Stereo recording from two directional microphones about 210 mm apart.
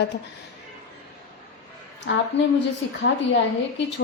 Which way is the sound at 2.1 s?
55° left (ahead or behind).